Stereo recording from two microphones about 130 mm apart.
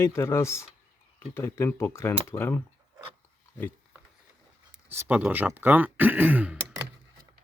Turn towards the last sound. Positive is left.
turn(degrees=-10)  # may be behind; listen again after turning